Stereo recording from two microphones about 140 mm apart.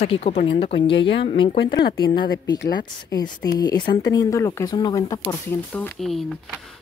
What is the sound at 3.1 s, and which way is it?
Speech, 25° left (ahead or behind).